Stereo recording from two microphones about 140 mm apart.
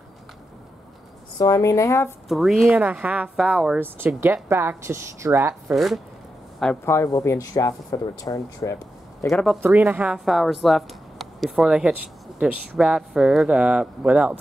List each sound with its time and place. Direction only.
1.4 s speech: 25° left (ahead or behind)
2.2 s speech: centre (ahead or behind); by 5.6 s 20° right (ahead or behind)
5.7 s speech: centre (ahead or behind)
6.9 s speech: 20° left (ahead or behind)
9.3 s speech: centre (ahead or behind)
9.6 s speech: 10° right (ahead or behind)